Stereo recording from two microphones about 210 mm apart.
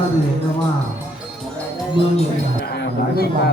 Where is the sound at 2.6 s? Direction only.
50° left (ahead or behind).